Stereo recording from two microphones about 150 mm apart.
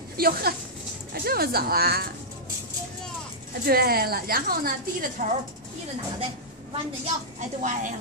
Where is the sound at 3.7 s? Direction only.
90° right; by 5.2 s 70° right (ahead or behind).